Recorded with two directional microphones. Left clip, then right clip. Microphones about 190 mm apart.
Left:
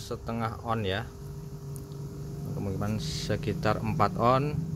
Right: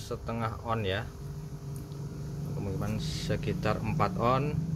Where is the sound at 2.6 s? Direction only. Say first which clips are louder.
Left 3 dB; 30° left (ahead or behind).